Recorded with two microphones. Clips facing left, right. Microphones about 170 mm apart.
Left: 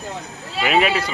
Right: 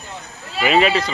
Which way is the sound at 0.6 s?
5° left (ahead or behind).